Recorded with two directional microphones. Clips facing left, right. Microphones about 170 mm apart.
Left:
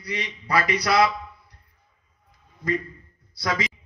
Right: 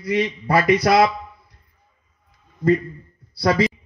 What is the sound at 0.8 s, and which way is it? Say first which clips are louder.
Speech: right 2 dB; 50° right (ahead or behind).